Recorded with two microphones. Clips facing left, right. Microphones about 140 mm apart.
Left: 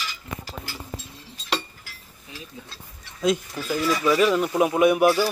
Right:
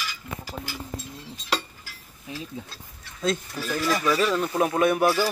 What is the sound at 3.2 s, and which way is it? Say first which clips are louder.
Speech: left 3 dB; 15° left (ahead or behind).